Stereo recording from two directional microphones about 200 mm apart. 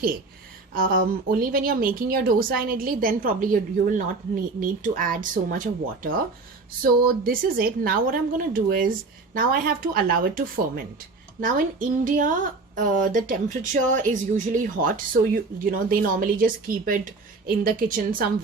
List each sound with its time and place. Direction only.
0.7 s a woman's voice: 45° right (ahead or behind)